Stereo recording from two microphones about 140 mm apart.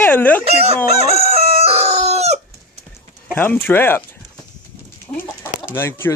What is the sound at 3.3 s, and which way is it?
Speech, 10° left (ahead or behind).